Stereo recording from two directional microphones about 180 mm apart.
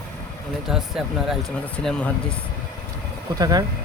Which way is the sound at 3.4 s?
20° right (ahead or behind).